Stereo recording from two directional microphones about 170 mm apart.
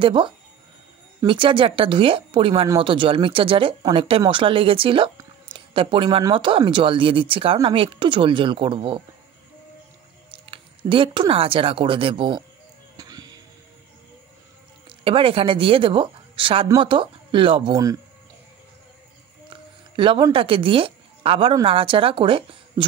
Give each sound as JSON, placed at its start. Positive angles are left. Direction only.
{"t": 0.0, "sound": "speech", "side_deg": -30}
{"t": 10.3, "sound": "speech", "side_deg": -30}
{"t": 12.9, "sound": "music", "side_deg": -20}
{"t": 14.9, "sound": "a woman's voice", "side_deg": -30}
{"t": 20.0, "sound": "speech", "side_deg": -30}